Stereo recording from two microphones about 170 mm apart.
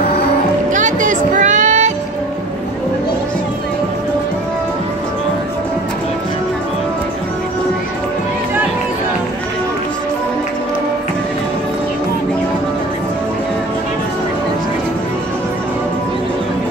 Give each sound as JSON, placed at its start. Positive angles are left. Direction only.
{"t": 0.7, "sound": "music", "side_deg": -50}